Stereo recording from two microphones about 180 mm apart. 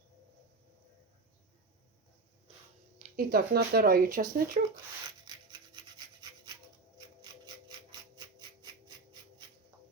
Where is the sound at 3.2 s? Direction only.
60° right (ahead or behind).